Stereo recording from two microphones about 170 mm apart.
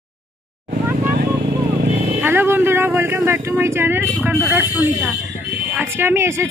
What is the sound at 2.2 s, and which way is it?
A woman's voice, 15° right (ahead or behind).